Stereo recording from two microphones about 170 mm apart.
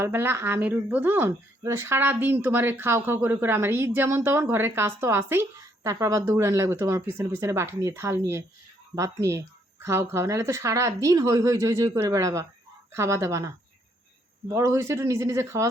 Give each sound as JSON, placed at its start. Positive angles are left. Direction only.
{"t": 0.0, "sound": "speech", "side_deg": -15}